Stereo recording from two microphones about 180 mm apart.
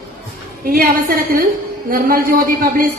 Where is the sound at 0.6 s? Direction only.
55° right (ahead or behind).